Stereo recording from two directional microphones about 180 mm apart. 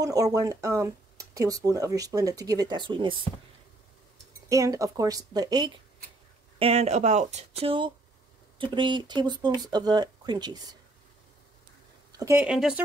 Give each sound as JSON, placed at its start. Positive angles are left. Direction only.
{"t": 0.0, "sound": "speech", "side_deg": -20}
{"t": 4.5, "sound": "speech", "side_deg": -20}
{"t": 6.6, "sound": "speech", "side_deg": -35}
{"t": 12.1, "sound": "speech", "side_deg": -15}
{"t": 12.4, "sound": "speech", "side_deg": -5}